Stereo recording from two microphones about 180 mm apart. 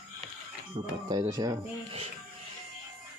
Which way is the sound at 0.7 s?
20° right (ahead or behind).